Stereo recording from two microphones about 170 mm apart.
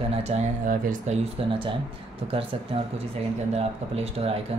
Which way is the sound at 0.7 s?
50° right (ahead or behind).